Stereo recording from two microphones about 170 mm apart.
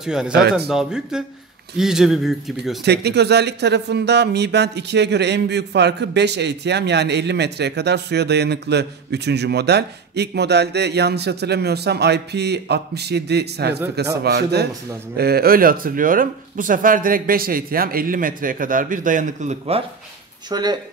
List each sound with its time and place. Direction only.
0.0 s a man's voice: 5° right (ahead or behind)
2.8 s speech: 75° right (ahead or behind); by 19.8 s 45° right (ahead or behind)
20.4 s speech: 25° right (ahead or behind)